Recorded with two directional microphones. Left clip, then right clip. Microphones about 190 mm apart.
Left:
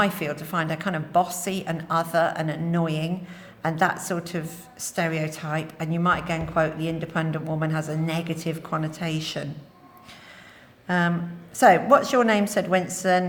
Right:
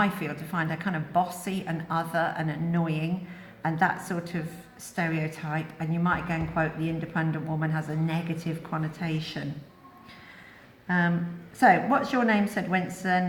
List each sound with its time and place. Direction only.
0.0 s a woman's voice: 55° left (ahead or behind)
10.8 s a woman's voice: 55° left (ahead or behind)